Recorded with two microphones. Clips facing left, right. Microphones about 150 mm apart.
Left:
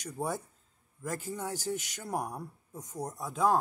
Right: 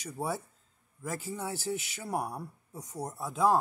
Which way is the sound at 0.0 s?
5° right (ahead or behind).